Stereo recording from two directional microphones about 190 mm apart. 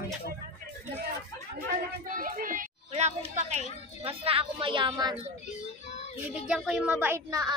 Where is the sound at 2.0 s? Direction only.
45° right (ahead or behind); by 5.2 s 20° right (ahead or behind).